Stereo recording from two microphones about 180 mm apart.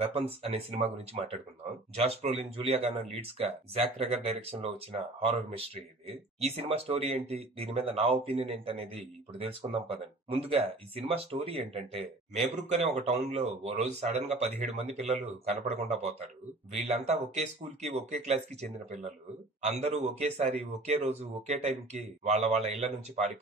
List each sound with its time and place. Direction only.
0.0 s speech: 35° right (ahead or behind)